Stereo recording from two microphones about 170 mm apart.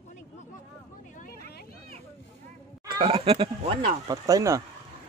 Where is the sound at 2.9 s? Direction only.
35° right (ahead or behind).